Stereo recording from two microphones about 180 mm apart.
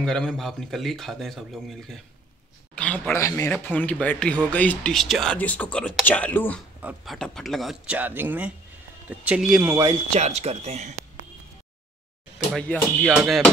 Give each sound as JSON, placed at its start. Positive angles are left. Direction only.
{"t": 0.0, "sound": "speech", "side_deg": 5}
{"t": 6.8, "sound": "speech", "side_deg": -10}
{"t": 7.2, "sound": "speech", "side_deg": 5}
{"t": 9.7, "sound": "speech", "side_deg": -20}
{"t": 10.1, "sound": "speech", "side_deg": -35}
{"t": 12.5, "sound": "speech", "side_deg": 5}